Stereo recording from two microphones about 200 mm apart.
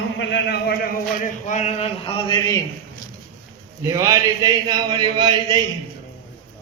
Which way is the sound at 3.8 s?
20° right (ahead or behind).